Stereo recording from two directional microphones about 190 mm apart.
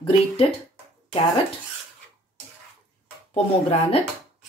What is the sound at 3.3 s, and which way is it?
Speech, 30° left (ahead or behind).